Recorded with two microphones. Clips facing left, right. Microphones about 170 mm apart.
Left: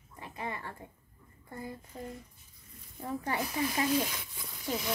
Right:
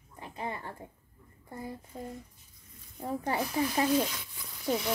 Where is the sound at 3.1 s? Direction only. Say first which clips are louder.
Right 3 dB; 30° right (ahead or behind).